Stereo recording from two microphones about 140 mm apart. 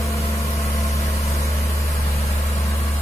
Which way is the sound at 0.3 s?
20° left (ahead or behind).